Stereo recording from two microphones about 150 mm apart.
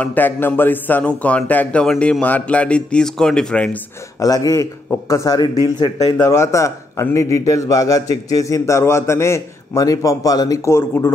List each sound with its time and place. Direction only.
0.0 s speech: 10° left (ahead or behind)
4.2 s a man's voice: 25° left (ahead or behind)